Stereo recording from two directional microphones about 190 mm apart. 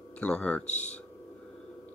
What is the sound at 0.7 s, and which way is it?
Speech, 35° left (ahead or behind).